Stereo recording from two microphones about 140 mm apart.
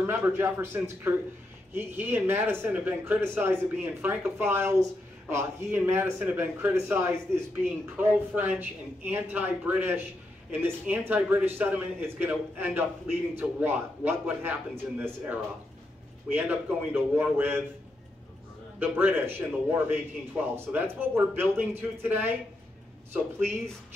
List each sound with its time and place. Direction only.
0.0 s speech: 15° right (ahead or behind)
18.8 s speech: 15° right (ahead or behind)